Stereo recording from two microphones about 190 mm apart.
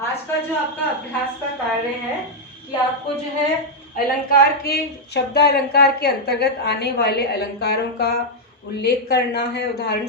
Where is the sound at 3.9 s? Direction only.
50° left (ahead or behind).